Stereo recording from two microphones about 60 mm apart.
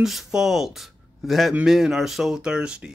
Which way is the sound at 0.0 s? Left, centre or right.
Centre.